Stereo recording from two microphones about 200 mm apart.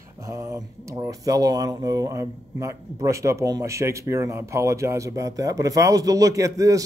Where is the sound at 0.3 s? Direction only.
15° right (ahead or behind).